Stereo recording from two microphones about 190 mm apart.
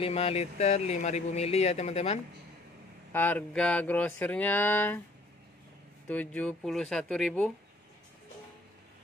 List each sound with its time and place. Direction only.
0.0 s speech: 30° left (ahead or behind)
3.1 s a sound: 10° left (ahead or behind)
6.0 s speech: 10° left (ahead or behind)